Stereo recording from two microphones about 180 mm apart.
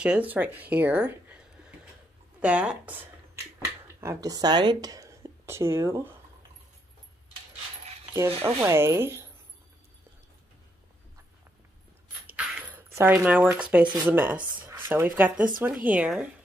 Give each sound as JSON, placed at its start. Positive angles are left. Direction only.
{"t": 0.0, "sound": "speech", "side_deg": -5}
{"t": 2.4, "sound": "speech", "side_deg": -5}
{"t": 8.3, "sound": "speech", "side_deg": -35}
{"t": 8.5, "sound": "speech", "side_deg": -15}
{"t": 12.3, "sound": "a sound", "side_deg": -10}
{"t": 14.0, "sound": "speech", "side_deg": -10}
{"t": 14.6, "sound": "a sound", "side_deg": -15}
{"t": 15.6, "sound": "speech", "side_deg": -10}